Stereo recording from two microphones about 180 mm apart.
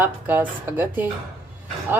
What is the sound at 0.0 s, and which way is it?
Speech, 10° right (ahead or behind).